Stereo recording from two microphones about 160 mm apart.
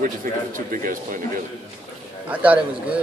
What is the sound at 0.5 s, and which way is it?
Speech, 60° right (ahead or behind).